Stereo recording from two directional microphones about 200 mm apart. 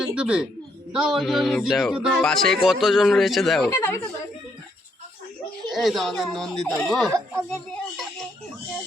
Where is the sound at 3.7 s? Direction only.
15° left (ahead or behind).